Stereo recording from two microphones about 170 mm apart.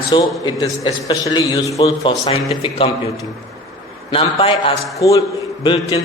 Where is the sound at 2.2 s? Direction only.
30° left (ahead or behind).